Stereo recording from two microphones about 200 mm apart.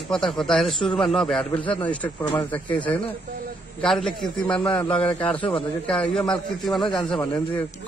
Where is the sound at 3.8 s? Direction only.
Centre (ahead or behind).